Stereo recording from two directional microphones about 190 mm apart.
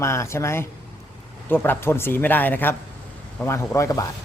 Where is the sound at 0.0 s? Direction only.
15° left (ahead or behind).